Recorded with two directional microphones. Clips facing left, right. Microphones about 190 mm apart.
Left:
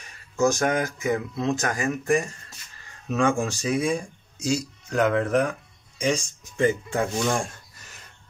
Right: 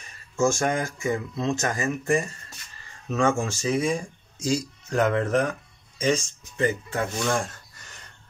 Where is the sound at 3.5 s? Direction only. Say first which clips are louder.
Even; 15° left (ahead or behind).